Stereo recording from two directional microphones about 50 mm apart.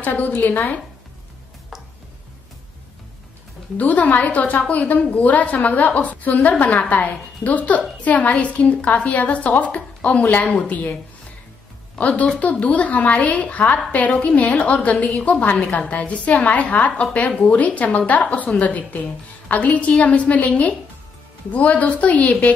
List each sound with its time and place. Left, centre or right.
0.0 s a woman's voice: left
3.7 s a woman's voice: left